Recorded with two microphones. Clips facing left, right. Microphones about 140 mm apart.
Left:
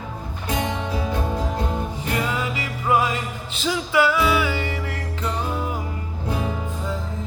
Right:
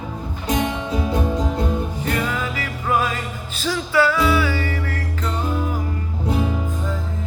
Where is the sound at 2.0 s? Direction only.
20° left (ahead or behind).